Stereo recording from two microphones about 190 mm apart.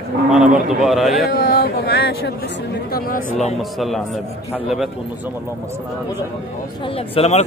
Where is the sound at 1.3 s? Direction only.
50° left (ahead or behind).